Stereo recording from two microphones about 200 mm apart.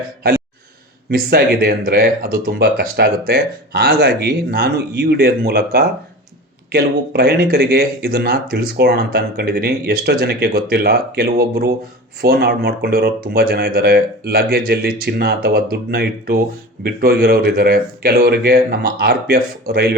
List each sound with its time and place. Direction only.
1.1 s speech: 50° right (ahead or behind)